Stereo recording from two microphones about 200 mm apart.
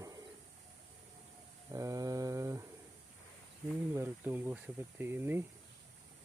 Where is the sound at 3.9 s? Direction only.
10° right (ahead or behind).